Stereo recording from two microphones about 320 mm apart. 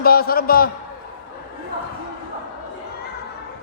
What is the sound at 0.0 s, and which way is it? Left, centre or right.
Speech, left.